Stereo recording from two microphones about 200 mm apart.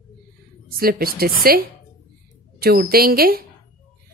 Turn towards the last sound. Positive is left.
turn(degrees=-50)  # may be behind; listen again after turning